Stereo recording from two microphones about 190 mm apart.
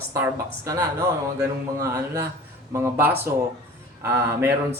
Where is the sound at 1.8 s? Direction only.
15° right (ahead or behind).